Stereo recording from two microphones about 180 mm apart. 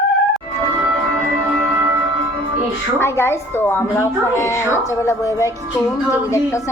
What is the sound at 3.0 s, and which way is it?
A woman's voice, 15° left (ahead or behind).